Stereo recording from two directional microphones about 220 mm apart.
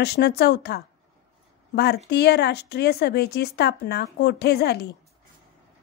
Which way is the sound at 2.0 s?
50° left (ahead or behind).